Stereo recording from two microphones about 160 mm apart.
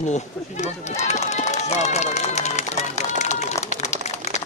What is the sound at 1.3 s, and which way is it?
Run, 45° left (ahead or behind).